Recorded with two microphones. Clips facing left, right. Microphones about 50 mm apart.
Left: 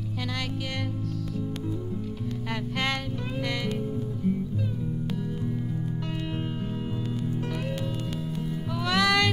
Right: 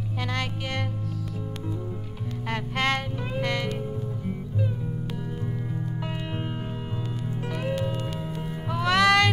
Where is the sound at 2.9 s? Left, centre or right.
Centre.